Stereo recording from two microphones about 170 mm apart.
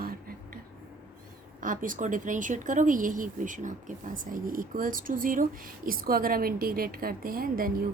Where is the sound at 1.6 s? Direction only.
50° right (ahead or behind).